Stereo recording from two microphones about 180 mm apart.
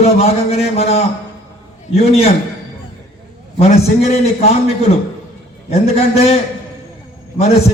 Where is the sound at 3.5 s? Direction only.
35° left (ahead or behind).